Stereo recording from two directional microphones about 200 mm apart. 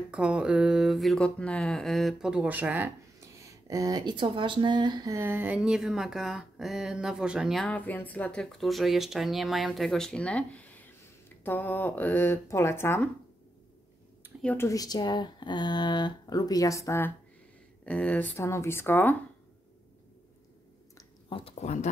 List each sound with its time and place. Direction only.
0.1 s speech: 5° right (ahead or behind); by 13.1 s 10° left (ahead or behind)
14.4 s speech: 10° left (ahead or behind)
21.0 s a sound: 25° left (ahead or behind)